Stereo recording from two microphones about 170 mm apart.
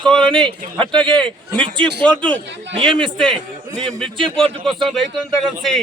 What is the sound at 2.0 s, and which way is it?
Speech, 5° left (ahead or behind).